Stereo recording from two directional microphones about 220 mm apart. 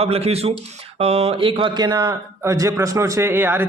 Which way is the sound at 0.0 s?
30° right (ahead or behind).